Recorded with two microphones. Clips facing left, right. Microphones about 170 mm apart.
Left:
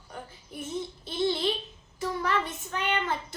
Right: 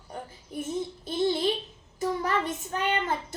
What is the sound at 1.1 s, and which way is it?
A child's voice, 45° right (ahead or behind).